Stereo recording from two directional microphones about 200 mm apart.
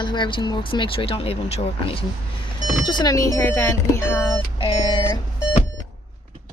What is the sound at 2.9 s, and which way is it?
Speech, 20° left (ahead or behind).